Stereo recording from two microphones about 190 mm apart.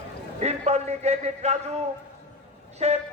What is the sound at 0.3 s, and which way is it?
Speech, 35° right (ahead or behind).